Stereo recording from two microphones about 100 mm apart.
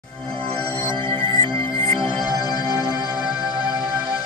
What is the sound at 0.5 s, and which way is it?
Music, 75° right (ahead or behind).